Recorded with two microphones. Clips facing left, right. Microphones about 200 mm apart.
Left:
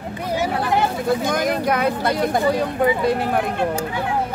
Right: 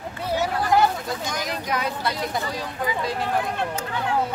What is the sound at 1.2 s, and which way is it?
Speech, 55° left (ahead or behind).